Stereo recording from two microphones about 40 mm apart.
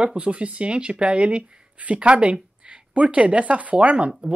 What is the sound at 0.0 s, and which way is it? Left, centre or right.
Speech, right.